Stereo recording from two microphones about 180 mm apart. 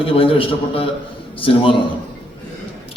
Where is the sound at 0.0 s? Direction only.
30° left (ahead or behind).